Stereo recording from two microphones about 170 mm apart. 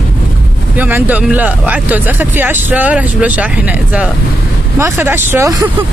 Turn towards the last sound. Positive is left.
turn(degrees=-15)  # may be behind; listen again after turning